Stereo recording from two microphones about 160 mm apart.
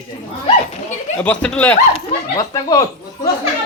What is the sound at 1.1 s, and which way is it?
Speech, 10° left (ahead or behind).